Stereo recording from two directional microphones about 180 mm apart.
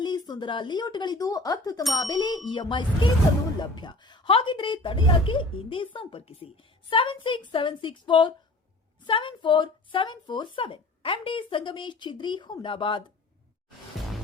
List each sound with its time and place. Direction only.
0.0 s a woman's voice: 25° left (ahead or behind)